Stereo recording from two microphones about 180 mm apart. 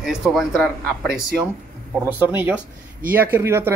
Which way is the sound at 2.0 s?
10° right (ahead or behind).